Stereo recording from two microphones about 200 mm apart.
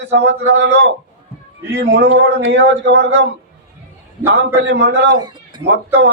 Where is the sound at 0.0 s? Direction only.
60° right (ahead or behind).